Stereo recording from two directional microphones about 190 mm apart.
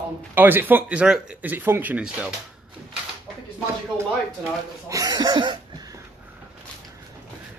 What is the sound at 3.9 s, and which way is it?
Speech, 15° right (ahead or behind).